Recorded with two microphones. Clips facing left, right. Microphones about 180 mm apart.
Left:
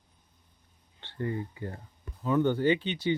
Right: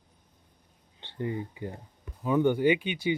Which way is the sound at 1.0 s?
15° right (ahead or behind).